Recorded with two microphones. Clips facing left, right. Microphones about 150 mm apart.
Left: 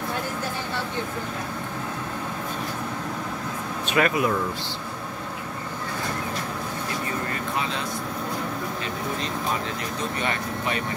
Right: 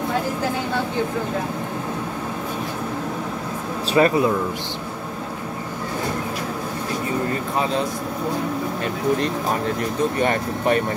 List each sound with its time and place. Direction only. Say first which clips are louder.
3.9 s speech: right 6 dB; 30° right (ahead or behind)
10.2 s speech: right 7 dB; 45° right (ahead or behind)